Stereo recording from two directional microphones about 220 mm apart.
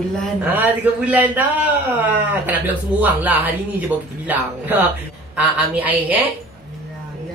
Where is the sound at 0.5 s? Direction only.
10° right (ahead or behind).